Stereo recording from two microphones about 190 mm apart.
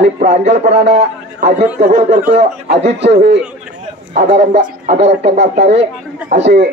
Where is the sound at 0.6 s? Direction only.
65° right (ahead or behind).